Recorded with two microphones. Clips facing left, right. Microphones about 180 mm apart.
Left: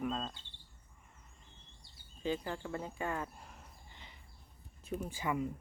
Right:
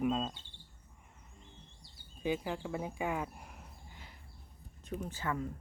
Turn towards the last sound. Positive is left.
turn(degrees=10)  # may be behind; listen again after turning